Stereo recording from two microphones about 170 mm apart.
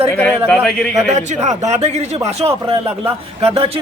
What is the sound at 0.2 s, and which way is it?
Speech, 5° left (ahead or behind).